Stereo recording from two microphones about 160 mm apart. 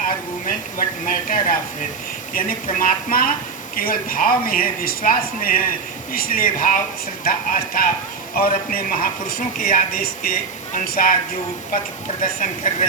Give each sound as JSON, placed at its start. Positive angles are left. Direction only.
{"t": 0.4, "sound": "speech", "side_deg": 55}
{"t": 2.6, "sound": "speech", "side_deg": 60}
{"t": 12.2, "sound": "speech", "side_deg": 55}